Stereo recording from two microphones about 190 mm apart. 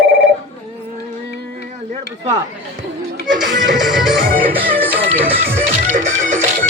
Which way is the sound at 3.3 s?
Centre (ahead or behind).